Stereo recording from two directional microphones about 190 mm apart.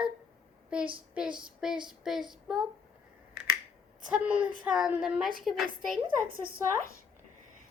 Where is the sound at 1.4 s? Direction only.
5° right (ahead or behind).